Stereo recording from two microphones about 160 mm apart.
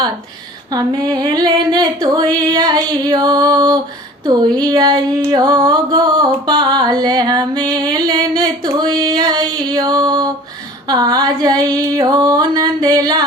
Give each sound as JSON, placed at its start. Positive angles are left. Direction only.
{"t": 0.7, "sound": "music", "side_deg": -25}